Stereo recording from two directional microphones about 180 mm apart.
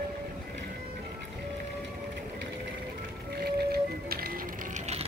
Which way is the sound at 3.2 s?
60° right (ahead or behind).